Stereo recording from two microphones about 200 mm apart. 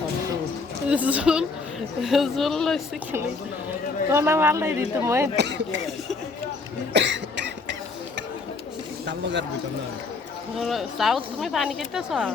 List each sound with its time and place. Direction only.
0.9 s speech: 5° right (ahead or behind)
4.1 s speech: 10° right (ahead or behind)
5.4 s a sound: 60° right (ahead or behind)
6.9 s cough: 60° right (ahead or behind)
10.6 s speech: centre (ahead or behind)